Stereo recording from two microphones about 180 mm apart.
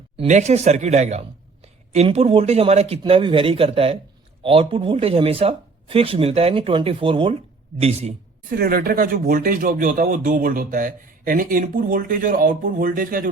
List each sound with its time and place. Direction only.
0.2 s speech: 40° right (ahead or behind)
8.4 s speech: 55° right (ahead or behind)